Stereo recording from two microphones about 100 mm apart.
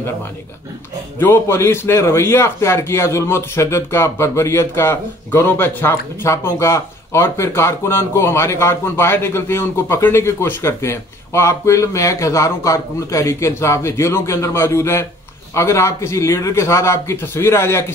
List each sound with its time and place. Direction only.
1.2 s a man's voice: 25° left (ahead or behind)